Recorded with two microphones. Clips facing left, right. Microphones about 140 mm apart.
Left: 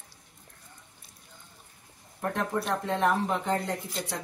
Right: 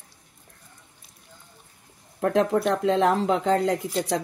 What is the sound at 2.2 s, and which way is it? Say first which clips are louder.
Speech: right 9 dB; 75° right (ahead or behind).